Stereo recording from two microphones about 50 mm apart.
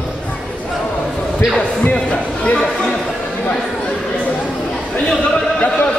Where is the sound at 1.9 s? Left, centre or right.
Left.